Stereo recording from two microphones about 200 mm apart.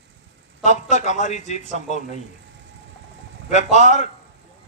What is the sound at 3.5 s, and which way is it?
Speech, 35° left (ahead or behind).